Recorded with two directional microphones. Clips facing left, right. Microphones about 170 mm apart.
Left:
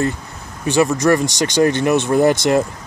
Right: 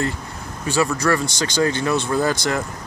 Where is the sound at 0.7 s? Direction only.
20° left (ahead or behind).